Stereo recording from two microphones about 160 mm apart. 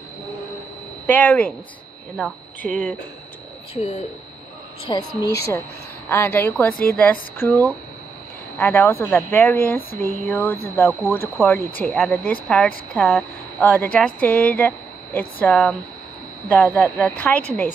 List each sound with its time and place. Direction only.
1.0 s speech: 10° left (ahead or behind)
2.6 s speech: 5° left (ahead or behind)
3.7 s speech: 40° left (ahead or behind)
4.8 s a woman's voice: 25° left (ahead or behind)
6.0 s speech: 15° left (ahead or behind)